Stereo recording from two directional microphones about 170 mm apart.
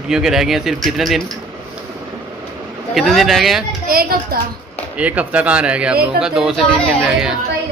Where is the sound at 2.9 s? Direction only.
Centre (ahead or behind).